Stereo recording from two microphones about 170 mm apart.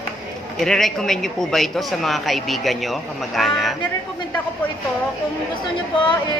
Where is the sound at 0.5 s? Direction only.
Centre (ahead or behind).